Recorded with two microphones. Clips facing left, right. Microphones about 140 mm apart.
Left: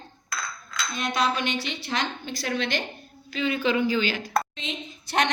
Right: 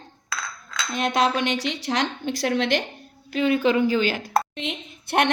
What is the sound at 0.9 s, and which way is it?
Speech, 85° right.